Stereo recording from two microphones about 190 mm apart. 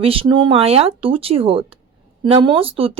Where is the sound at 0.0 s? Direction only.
30° right (ahead or behind).